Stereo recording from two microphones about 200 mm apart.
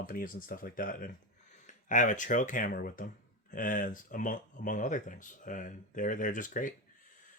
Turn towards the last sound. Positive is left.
turn(degrees=40)  # may be behind; listen again after turning